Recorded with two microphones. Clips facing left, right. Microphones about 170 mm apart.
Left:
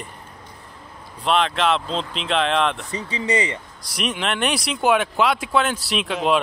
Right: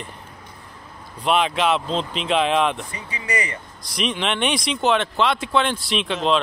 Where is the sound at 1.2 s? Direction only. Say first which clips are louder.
Even; 5° right (ahead or behind).